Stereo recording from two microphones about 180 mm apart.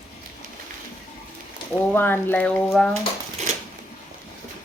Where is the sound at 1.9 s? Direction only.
10° left (ahead or behind).